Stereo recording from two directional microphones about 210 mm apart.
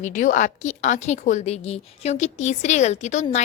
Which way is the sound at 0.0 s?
35° left (ahead or behind).